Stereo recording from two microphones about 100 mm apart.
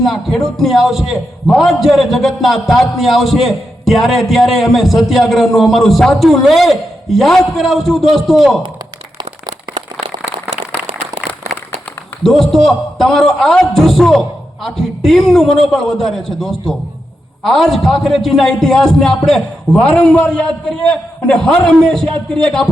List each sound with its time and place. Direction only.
0.0 s a man's voice: centre (ahead or behind)
10.0 s a sound: 55° right (ahead or behind)
12.2 s a man's voice: 5° left (ahead or behind)